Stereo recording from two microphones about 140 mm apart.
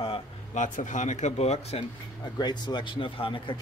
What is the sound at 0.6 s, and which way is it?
Speech, 60° left (ahead or behind).